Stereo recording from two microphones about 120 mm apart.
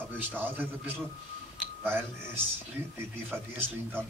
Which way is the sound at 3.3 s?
20° right (ahead or behind).